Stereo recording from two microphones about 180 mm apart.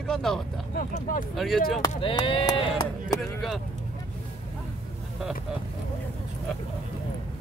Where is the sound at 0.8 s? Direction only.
45° left (ahead or behind).